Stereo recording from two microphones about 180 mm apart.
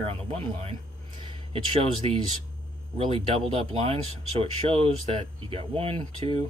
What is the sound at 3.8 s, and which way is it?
Speech, 30° right (ahead or behind).